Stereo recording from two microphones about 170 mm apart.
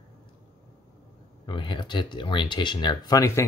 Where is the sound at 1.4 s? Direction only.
30° left (ahead or behind).